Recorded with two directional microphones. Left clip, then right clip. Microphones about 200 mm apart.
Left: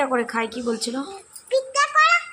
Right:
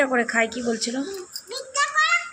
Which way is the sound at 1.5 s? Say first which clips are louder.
Left 5 dB; 20° left (ahead or behind).